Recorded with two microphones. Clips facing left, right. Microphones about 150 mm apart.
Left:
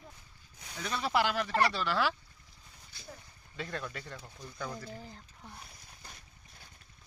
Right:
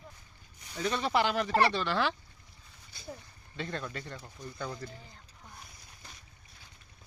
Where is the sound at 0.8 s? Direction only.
Centre (ahead or behind).